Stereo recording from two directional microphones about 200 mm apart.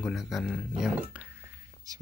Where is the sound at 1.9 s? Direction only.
20° right (ahead or behind).